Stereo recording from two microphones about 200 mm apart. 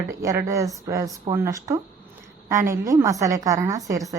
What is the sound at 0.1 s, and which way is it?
A woman's voice, 15° right (ahead or behind).